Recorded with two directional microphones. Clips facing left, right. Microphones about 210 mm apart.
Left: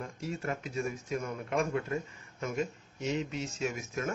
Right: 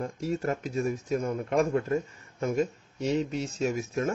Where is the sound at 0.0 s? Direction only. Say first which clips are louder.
Right 7 dB; 40° right (ahead or behind).